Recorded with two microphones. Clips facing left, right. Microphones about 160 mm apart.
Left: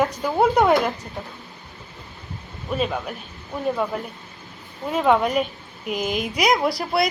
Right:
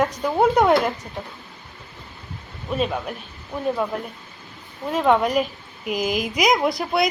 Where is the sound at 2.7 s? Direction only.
Centre (ahead or behind).